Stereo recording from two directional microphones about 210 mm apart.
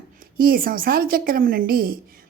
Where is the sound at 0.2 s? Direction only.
45° right (ahead or behind).